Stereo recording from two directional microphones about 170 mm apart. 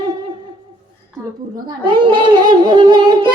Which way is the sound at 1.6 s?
25° right (ahead or behind).